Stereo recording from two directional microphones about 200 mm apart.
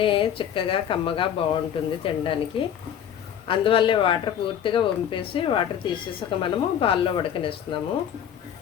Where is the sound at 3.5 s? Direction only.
25° left (ahead or behind).